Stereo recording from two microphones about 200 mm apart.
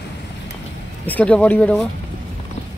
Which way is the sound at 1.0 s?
10° left (ahead or behind).